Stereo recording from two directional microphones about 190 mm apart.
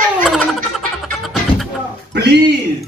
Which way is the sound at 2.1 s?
60° right (ahead or behind).